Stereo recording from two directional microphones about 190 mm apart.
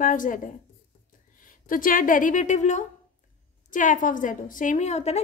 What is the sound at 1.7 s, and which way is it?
A woman's voice, 45° left (ahead or behind).